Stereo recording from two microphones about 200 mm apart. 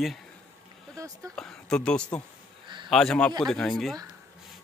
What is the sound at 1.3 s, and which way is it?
Speech, 5° left (ahead or behind).